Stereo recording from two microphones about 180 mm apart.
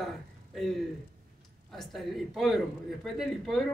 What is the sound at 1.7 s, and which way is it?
Speech, centre (ahead or behind).